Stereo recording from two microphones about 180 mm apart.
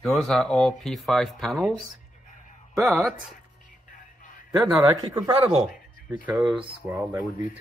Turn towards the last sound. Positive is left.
turn(degrees=-20)  # may be behind; listen again after turning